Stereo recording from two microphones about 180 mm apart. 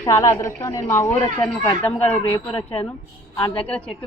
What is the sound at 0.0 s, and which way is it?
A woman's voice, 15° left (ahead or behind).